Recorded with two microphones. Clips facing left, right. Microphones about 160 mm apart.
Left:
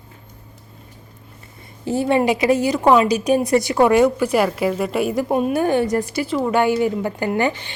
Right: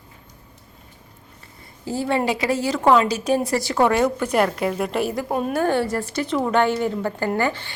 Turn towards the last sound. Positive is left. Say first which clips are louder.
# left 2 dB
turn(degrees=20)  # may be behind; listen again after turning